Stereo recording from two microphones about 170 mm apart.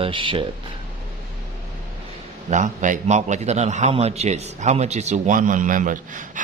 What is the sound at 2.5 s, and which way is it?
A man's voice, 50° right (ahead or behind).